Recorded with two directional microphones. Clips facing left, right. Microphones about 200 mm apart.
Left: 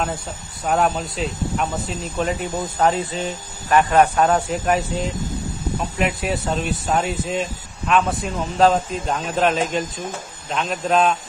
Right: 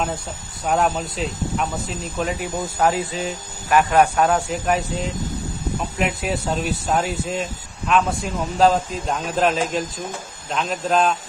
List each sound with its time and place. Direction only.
0.7 s speech: centre (ahead or behind)